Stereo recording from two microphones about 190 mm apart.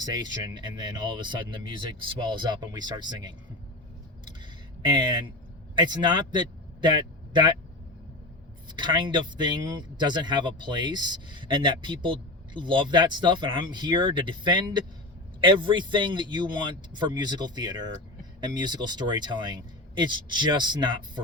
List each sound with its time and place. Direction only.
0.0 s speech: 20° right (ahead or behind)
4.8 s a man's voice: 25° right (ahead or behind)
8.7 s speech: 25° right (ahead or behind)